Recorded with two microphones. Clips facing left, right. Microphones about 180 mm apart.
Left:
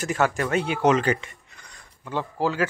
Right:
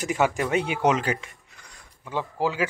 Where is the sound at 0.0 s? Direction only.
15° right (ahead or behind).